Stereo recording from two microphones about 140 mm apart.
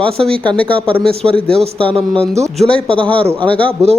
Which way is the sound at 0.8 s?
40° right (ahead or behind).